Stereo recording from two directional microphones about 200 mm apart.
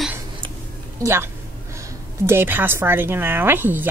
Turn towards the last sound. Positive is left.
turn(degrees=-10)  # may be behind; listen again after turning